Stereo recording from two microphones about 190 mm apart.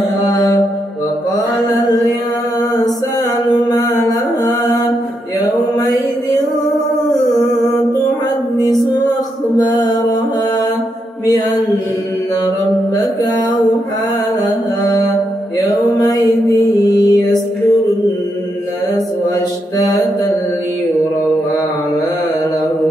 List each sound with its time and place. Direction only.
0.3 s mantra: 20° left (ahead or behind)
3.5 s music: 20° left (ahead or behind)
5.8 s mantra: 20° left (ahead or behind)
9.7 s music: 20° left (ahead or behind)
15.6 s music: 20° left (ahead or behind)